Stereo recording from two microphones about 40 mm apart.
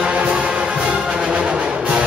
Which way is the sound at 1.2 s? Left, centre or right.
Right.